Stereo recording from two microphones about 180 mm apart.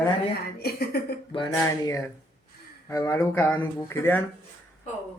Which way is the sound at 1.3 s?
25° left (ahead or behind).